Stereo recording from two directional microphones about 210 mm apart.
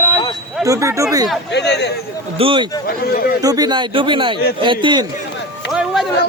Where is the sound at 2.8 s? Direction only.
45° left (ahead or behind).